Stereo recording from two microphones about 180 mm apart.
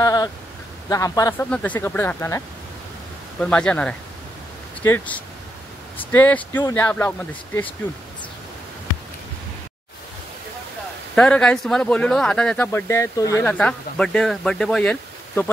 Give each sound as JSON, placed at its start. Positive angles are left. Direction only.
{"t": 0.0, "sound": "a sound", "side_deg": 20}
{"t": 0.8, "sound": "a man's voice", "side_deg": 20}
{"t": 11.1, "sound": "speech", "side_deg": 5}